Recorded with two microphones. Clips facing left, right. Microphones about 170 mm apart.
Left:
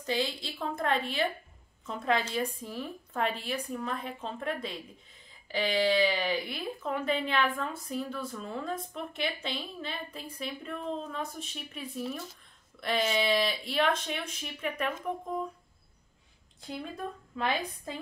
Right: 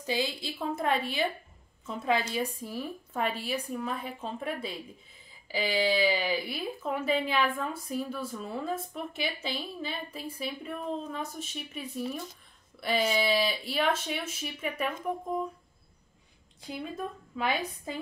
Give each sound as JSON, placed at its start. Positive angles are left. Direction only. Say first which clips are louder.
{"t": 0.0, "sound": "speech", "louder": "even", "side_deg": -5}
{"t": 16.6, "sound": "speech", "louder": "right 1 dB", "side_deg": -5}